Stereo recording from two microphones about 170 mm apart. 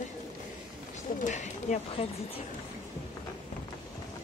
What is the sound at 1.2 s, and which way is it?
Speech, 45° left (ahead or behind).